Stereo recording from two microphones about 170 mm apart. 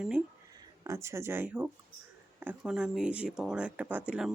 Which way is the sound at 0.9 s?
15° right (ahead or behind).